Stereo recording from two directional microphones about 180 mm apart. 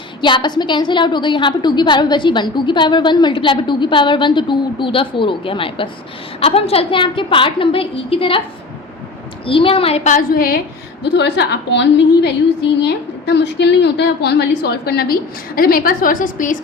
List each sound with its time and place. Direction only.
0.2 s a woman's voice: 25° left (ahead or behind)
9.5 s a woman's voice: 30° left (ahead or behind); by 10.6 s 55° left (ahead or behind)
11.0 s a woman's voice: 70° left (ahead or behind); by 16.6 s 50° left (ahead or behind)